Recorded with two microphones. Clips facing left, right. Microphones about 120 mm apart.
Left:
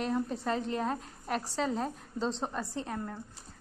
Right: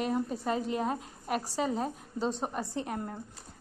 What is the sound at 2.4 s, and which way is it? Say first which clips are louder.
Speech: right 2 dB; 15° right (ahead or behind).